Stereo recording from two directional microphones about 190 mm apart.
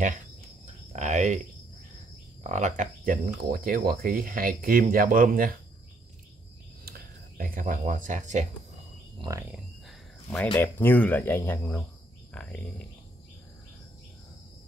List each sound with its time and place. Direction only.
0.9 s speech: 40° right (ahead or behind)
2.4 s speech: 40° right (ahead or behind)
6.8 s speech: 50° right (ahead or behind)
9.8 s a sound: 5° left (ahead or behind)
10.6 s speech: 10° left (ahead or behind)